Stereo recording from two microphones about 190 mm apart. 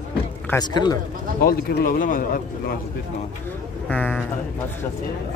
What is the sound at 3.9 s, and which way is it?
Speech, 10° left (ahead or behind).